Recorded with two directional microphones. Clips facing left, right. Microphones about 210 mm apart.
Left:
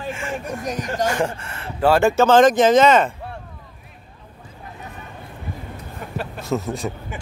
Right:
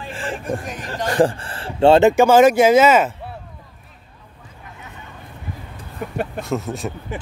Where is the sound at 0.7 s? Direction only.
40° left (ahead or behind).